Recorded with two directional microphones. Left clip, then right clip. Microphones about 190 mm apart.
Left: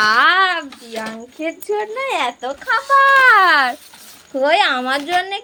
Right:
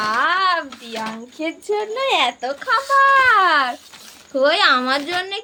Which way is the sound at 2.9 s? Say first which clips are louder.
Left 3 dB; 15° left (ahead or behind).